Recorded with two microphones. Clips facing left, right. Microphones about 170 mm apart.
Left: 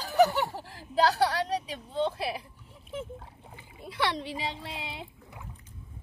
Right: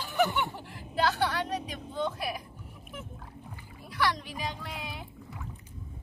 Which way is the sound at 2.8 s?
30° left (ahead or behind).